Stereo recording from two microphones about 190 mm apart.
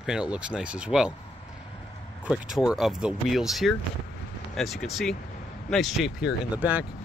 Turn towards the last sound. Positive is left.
turn(degrees=-10)  # may be behind; listen again after turning